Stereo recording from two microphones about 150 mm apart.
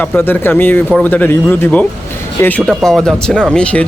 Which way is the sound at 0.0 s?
15° left (ahead or behind).